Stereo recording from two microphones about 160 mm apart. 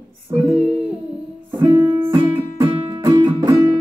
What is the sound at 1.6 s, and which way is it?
Music, 15° right (ahead or behind).